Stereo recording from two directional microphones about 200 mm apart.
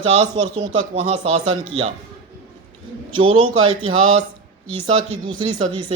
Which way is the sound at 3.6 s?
90° right.